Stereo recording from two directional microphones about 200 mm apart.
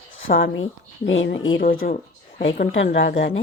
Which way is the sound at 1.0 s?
70° left (ahead or behind).